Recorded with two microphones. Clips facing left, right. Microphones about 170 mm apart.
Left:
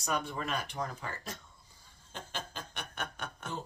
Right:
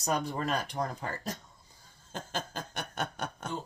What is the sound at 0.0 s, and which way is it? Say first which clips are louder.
Speech: right 4 dB; 35° right (ahead or behind).